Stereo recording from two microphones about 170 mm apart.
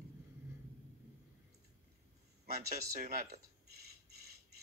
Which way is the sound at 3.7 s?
65° right (ahead or behind).